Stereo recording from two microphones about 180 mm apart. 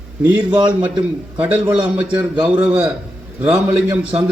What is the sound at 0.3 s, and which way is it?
Speech, 25° right (ahead or behind).